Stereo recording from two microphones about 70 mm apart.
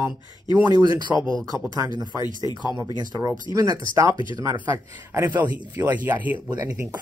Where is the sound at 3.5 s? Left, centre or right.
Right.